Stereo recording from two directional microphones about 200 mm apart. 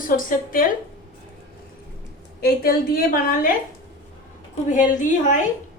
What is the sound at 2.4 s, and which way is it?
A woman's voice, 50° left (ahead or behind).